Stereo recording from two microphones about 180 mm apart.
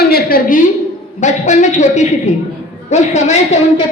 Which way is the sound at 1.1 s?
40° left (ahead or behind).